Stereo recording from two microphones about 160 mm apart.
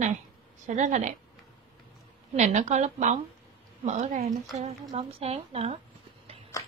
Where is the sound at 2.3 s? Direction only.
50° right (ahead or behind).